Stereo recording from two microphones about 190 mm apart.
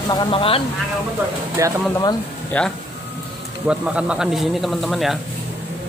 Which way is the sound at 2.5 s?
5° left (ahead or behind).